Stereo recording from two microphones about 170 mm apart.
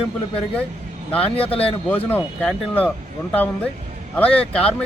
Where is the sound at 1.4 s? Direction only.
35° left (ahead or behind).